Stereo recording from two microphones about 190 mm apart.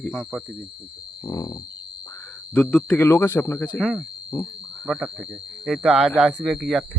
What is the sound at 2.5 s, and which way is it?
Speech, 5° left (ahead or behind).